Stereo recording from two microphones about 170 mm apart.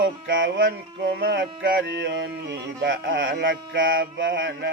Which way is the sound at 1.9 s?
85° right.